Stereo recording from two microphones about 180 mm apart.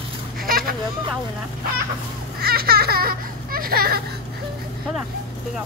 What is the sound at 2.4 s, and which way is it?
Speech, 60° right (ahead or behind).